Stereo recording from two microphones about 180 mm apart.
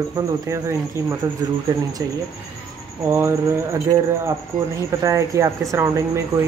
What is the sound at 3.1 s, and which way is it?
Speech, 15° right (ahead or behind).